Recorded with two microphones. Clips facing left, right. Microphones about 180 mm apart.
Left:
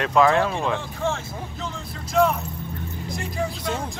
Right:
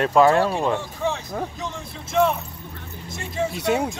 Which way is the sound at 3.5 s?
65° right (ahead or behind).